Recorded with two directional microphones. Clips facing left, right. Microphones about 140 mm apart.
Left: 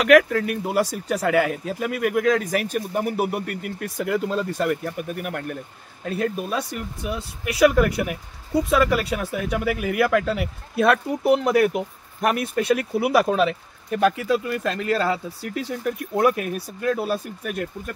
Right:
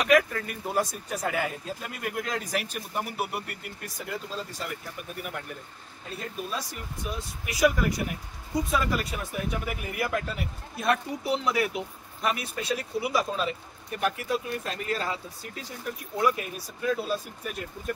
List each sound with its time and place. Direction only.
0.0 s speech: 85° left; by 17.9 s 60° left (ahead or behind)